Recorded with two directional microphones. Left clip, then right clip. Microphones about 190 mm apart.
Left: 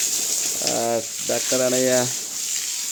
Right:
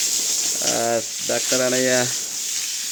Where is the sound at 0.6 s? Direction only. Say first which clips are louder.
Right 1 dB; centre (ahead or behind).